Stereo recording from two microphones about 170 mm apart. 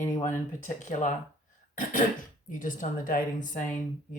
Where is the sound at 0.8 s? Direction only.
45° left (ahead or behind).